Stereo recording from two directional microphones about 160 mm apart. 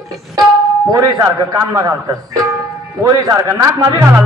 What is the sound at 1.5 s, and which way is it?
A man's voice, 20° right (ahead or behind).